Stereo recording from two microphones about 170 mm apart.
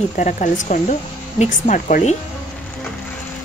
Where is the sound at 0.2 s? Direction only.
45° left (ahead or behind).